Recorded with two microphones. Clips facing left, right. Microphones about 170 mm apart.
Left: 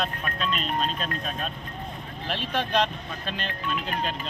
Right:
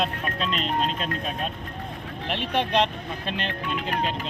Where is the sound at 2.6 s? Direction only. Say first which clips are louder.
Right 2 dB; 25° right (ahead or behind).